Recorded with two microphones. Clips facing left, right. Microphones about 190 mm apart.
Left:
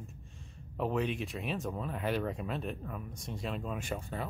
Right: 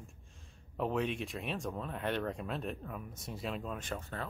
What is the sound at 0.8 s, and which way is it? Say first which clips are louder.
Speech: left 1 dB; centre (ahead or behind).